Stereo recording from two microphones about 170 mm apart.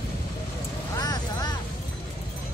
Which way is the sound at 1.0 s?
25° left (ahead or behind).